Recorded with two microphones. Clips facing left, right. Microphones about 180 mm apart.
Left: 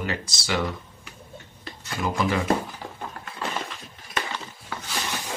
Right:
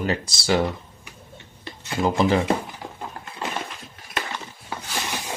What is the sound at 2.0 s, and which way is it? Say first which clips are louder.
Speech: right 5 dB; 30° right (ahead or behind).